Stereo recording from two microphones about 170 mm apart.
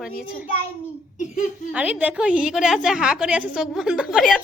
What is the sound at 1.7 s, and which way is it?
A woman's voice, 5° right (ahead or behind).